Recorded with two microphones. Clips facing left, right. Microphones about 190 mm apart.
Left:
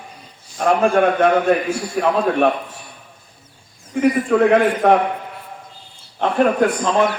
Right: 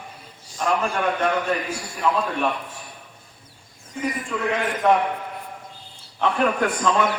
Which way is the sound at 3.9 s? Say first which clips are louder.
Left 12 dB; 60° left (ahead or behind).